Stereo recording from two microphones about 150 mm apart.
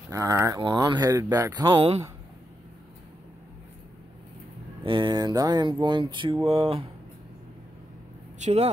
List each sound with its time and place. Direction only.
0.1 s speech: 20° right (ahead or behind)
4.8 s speech: 30° right (ahead or behind)